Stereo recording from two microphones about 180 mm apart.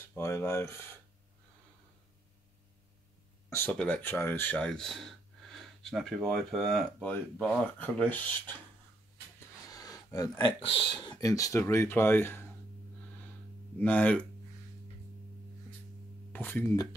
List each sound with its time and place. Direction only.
0.1 s speech: 15° left (ahead or behind)
3.4 s speech: 10° left (ahead or behind)
9.7 s a sound: 20° left (ahead or behind)
10.7 s speech: 25° left (ahead or behind)
13.7 s speech: 10° left (ahead or behind)
16.3 s speech: 10° left (ahead or behind)